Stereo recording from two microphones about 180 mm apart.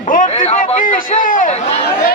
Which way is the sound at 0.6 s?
50° left (ahead or behind).